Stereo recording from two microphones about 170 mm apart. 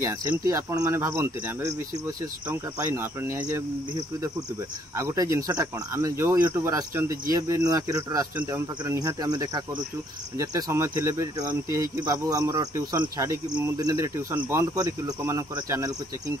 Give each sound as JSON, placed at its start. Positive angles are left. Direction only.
{"t": 0.0, "sound": "speech", "side_deg": -15}
{"t": 4.9, "sound": "speech", "side_deg": -20}